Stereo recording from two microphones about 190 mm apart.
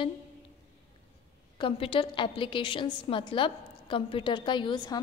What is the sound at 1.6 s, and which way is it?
A woman's voice, 30° left (ahead or behind).